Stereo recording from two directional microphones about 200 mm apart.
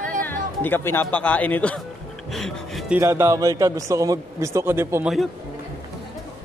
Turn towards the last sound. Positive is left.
turn(degrees=-10)  # may be behind; listen again after turning